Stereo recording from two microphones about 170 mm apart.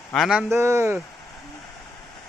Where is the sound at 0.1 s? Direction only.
Centre (ahead or behind).